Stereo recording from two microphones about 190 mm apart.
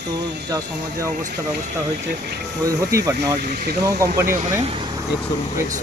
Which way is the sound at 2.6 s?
15° right (ahead or behind).